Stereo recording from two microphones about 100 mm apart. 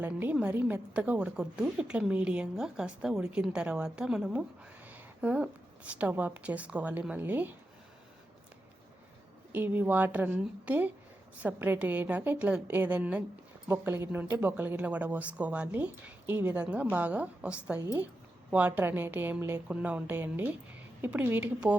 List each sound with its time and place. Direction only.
0.0 s a woman's voice: 20° right (ahead or behind)
9.5 s a woman's voice: 15° right (ahead or behind)
19.6 s a woman's voice: 15° right (ahead or behind)